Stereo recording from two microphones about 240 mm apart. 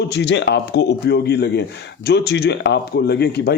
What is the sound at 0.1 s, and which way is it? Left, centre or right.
Speech, left.